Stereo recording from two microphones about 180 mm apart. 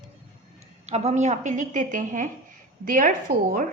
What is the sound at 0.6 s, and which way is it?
A woman's voice, 35° right (ahead or behind).